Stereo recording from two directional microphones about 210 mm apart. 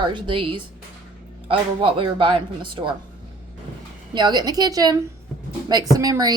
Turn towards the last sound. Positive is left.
turn(degrees=-15)  # may be behind; listen again after turning